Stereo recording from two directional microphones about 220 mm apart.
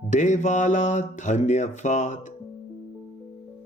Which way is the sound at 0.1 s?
35° left (ahead or behind).